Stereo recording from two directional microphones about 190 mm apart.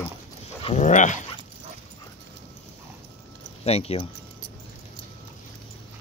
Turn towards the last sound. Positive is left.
turn(degrees=30)  # may be behind; listen again after turning